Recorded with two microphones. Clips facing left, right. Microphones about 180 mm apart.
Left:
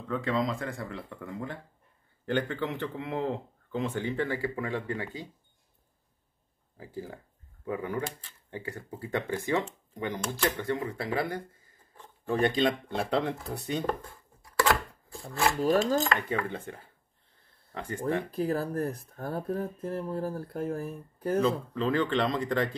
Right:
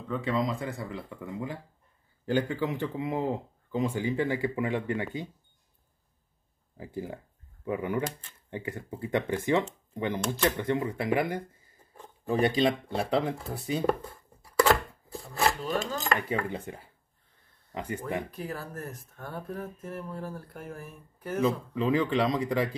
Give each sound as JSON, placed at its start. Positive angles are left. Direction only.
{"t": 0.1, "sound": "speech", "side_deg": 0}
{"t": 6.8, "sound": "speech", "side_deg": -20}
{"t": 14.6, "sound": "chopping", "side_deg": 0}
{"t": 15.6, "sound": "speech", "side_deg": 40}
{"t": 16.2, "sound": "speech", "side_deg": -10}
{"t": 18.3, "sound": "speech", "side_deg": 35}
{"t": 21.7, "sound": "speech", "side_deg": -10}